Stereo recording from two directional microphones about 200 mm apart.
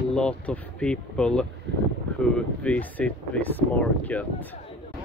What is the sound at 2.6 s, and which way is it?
Speech, 5° left (ahead or behind).